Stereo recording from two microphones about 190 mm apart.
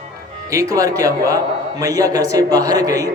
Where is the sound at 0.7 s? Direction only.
20° right (ahead or behind).